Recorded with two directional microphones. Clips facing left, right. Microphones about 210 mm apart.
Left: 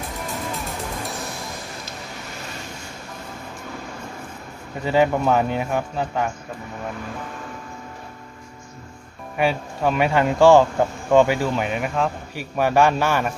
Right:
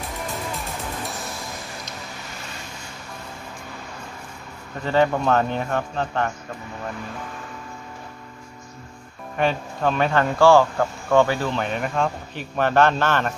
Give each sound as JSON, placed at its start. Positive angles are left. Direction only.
{"t": 4.8, "sound": "a man's voice", "side_deg": 10}
{"t": 9.4, "sound": "a man's voice", "side_deg": 10}